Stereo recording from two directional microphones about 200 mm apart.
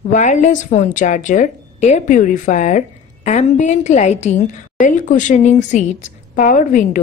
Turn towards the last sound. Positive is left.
turn(degrees=40)  # may be behind; listen again after turning